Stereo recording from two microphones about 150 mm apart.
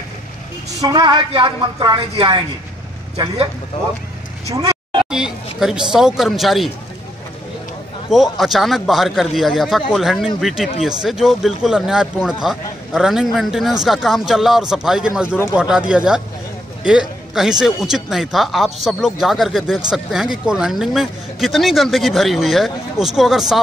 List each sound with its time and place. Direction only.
0.7 s a woman's voice: 25° right (ahead or behind)
5.1 s a man's voice: 5° right (ahead or behind)
8.1 s speech: centre (ahead or behind)